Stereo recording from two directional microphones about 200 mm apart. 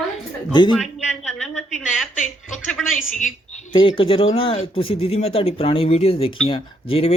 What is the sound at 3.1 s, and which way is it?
Speech, 40° left (ahead or behind).